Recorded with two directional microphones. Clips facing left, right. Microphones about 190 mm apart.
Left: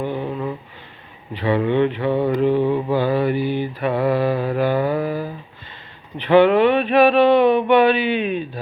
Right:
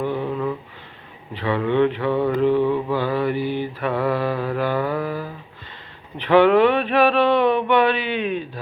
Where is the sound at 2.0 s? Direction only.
25° left (ahead or behind).